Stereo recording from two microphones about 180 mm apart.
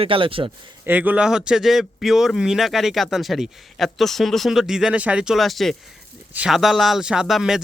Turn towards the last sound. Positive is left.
turn(degrees=0)  # may be behind; listen again after turning